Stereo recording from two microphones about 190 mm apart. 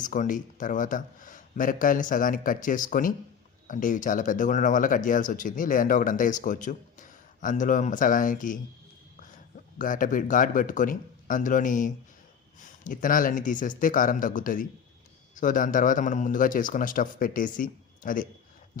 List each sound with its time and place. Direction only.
0.0 s a man's voice: 45° left (ahead or behind)